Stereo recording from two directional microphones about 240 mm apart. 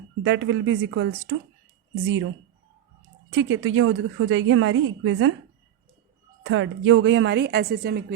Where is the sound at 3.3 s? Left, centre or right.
Right.